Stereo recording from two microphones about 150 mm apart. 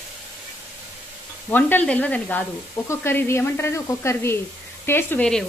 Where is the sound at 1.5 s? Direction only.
10° left (ahead or behind).